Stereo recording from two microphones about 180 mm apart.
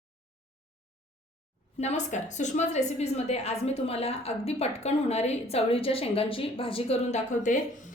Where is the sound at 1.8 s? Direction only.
40° left (ahead or behind).